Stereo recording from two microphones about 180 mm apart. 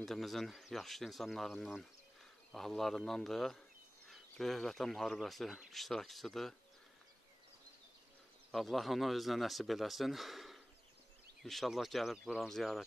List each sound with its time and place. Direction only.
0.0 s speech: centre (ahead or behind)
8.5 s speech: centre (ahead or behind)